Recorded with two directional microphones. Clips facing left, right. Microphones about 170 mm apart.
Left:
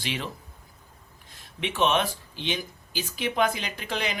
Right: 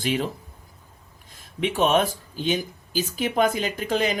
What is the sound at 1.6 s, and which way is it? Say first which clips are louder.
Speech: right 4 dB; 40° right (ahead or behind).